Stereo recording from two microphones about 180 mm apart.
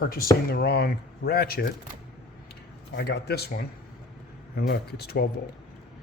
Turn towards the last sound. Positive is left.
turn(degrees=60)  # may be behind; listen again after turning